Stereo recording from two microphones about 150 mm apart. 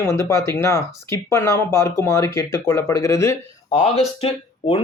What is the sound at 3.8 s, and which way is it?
Speech, 40° left (ahead or behind).